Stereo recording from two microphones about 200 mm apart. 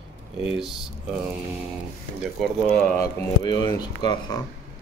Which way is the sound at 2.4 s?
5° left (ahead or behind).